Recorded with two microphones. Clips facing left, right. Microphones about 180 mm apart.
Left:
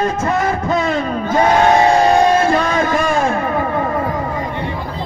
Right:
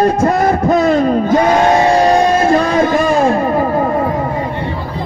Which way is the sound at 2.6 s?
35° right (ahead or behind).